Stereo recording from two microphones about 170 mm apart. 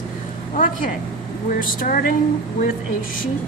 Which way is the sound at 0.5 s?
50° left (ahead or behind).